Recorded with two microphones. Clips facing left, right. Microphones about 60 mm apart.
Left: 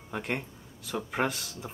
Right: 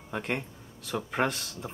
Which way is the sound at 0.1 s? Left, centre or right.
Centre.